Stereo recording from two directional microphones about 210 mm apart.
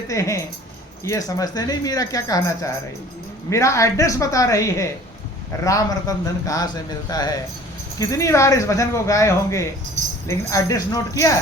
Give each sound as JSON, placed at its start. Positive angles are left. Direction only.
{"t": 0.1, "sound": "speech", "side_deg": 15}